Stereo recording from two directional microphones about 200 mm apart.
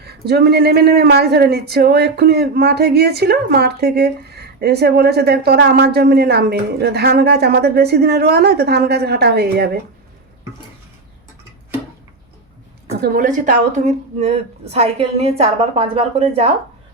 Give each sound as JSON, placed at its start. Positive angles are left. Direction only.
{"t": 0.0, "sound": "speech", "side_deg": -55}
{"t": 13.0, "sound": "a woman's voice", "side_deg": -45}